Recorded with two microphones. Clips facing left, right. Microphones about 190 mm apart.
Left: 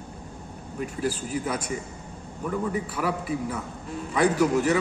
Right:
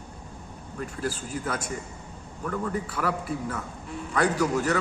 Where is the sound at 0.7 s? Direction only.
10° left (ahead or behind).